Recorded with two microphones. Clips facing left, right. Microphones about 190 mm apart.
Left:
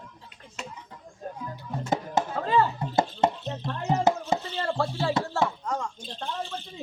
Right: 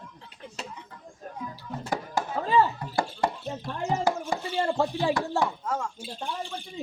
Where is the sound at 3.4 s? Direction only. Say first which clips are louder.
Left 1 dB; 10° right (ahead or behind).